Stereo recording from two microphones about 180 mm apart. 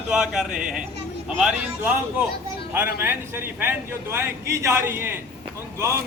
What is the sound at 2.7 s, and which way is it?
A man's voice, 10° right (ahead or behind).